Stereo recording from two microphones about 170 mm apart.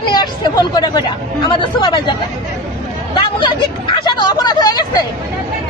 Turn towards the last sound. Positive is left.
turn(degrees=25)  # may be behind; listen again after turning